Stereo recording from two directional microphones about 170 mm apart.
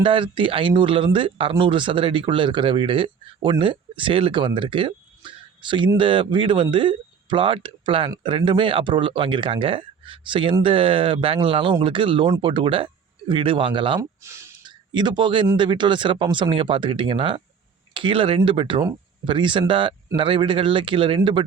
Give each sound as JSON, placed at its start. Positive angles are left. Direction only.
{"t": 0.0, "sound": "speech", "side_deg": -30}
{"t": 14.2, "sound": "a sound", "side_deg": -15}
{"t": 15.5, "sound": "speech", "side_deg": -30}